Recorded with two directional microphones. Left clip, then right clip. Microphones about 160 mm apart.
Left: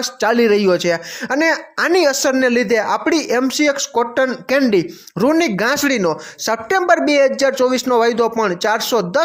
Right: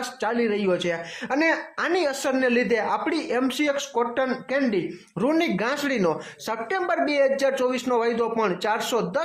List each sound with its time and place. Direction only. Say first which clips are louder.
0.0 s a woman's voice: left 10 dB; 30° left (ahead or behind)
0.3 s a woman's voice: left 10 dB; 45° left (ahead or behind); by 1.9 s 30° left (ahead or behind)
1.9 s a woman's voice: left 10 dB; 40° left (ahead or behind)
2.3 s a woman's voice: left 7 dB; 30° left (ahead or behind)
6.5 s a woman's voice: left 11 dB; 35° left (ahead or behind)